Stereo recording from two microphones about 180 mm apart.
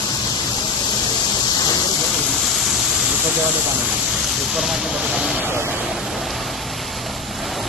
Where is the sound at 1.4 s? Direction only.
20° left (ahead or behind).